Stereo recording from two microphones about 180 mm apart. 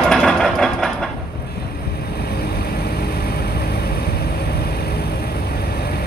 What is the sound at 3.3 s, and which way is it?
Vehicle, 60° left (ahead or behind).